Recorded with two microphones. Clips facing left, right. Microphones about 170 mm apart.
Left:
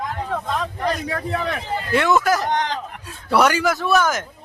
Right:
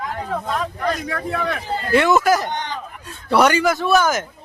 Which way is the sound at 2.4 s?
90° left.